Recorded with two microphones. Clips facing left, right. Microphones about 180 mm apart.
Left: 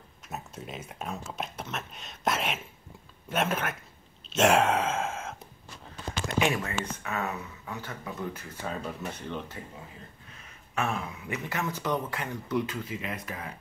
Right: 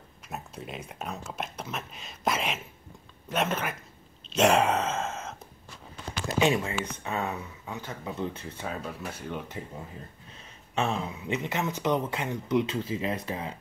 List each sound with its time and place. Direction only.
0.3 s speech: centre (ahead or behind)
6.2 s speech: 25° right (ahead or behind)
8.6 s speech: 5° right (ahead or behind)
10.7 s speech: 25° right (ahead or behind)